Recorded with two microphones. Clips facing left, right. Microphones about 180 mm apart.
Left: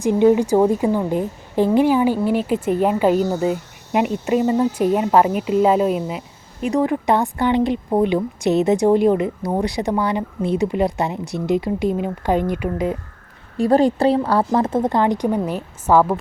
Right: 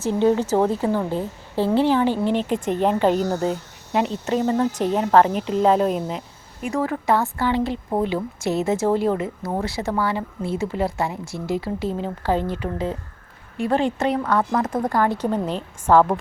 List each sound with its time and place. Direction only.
0.0 s a woman's voice: 15° left (ahead or behind)
6.6 s a woman's voice: 20° left (ahead or behind)
13.6 s speech: 40° left (ahead or behind); by 16.1 s 10° left (ahead or behind)